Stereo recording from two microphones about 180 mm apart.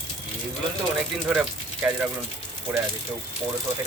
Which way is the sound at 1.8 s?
10° right (ahead or behind).